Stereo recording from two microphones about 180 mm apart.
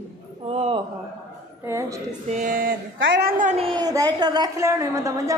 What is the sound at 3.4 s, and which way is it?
Speech, 35° right (ahead or behind).